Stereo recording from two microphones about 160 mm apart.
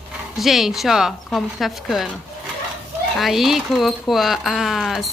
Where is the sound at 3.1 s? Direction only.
Centre (ahead or behind).